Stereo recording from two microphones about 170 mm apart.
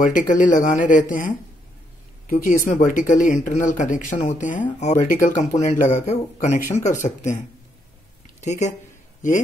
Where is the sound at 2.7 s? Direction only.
50° left (ahead or behind).